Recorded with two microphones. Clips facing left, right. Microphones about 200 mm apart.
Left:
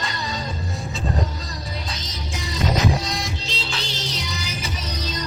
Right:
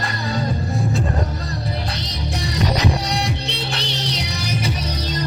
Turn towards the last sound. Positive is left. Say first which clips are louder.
# right 6 dB
turn(degrees=-60)  # may be behind; listen again after turning